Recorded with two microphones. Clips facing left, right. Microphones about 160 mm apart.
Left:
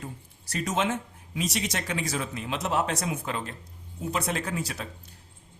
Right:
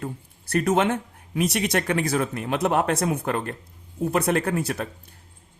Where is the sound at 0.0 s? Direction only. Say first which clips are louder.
Right 7 dB; 55° right (ahead or behind).